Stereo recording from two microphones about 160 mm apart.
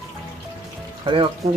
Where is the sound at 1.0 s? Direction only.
30° right (ahead or behind).